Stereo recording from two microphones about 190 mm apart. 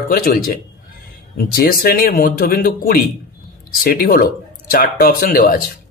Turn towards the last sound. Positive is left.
turn(degrees=50)  # may be behind; listen again after turning